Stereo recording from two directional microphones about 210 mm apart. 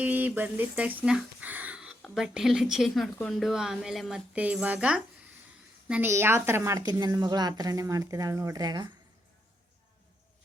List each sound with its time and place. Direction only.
0.0 s a woman's voice: 10° right (ahead or behind)